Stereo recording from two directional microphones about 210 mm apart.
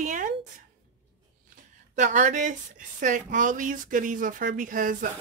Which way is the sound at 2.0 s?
35° right (ahead or behind).